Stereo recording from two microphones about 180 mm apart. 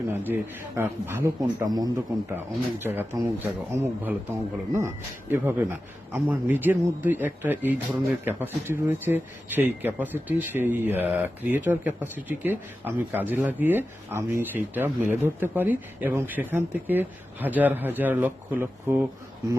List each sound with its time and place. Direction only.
0.8 s speech: 15° right (ahead or behind)